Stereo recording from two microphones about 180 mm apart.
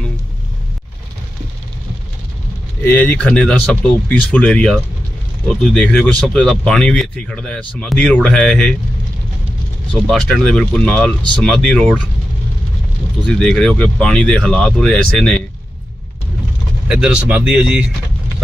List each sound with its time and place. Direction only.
2.8 s speech: 10° left (ahead or behind)
9.9 s speech: 5° left (ahead or behind)
13.2 s speech: 5° left (ahead or behind)
16.8 s speech: 5° right (ahead or behind)